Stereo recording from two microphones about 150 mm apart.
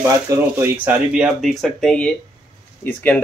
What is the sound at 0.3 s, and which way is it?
Speech, 15° right (ahead or behind).